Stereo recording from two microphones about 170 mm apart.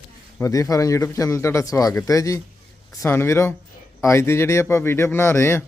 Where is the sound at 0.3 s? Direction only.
20° left (ahead or behind).